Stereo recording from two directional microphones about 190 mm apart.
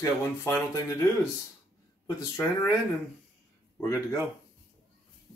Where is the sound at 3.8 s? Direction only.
15° left (ahead or behind).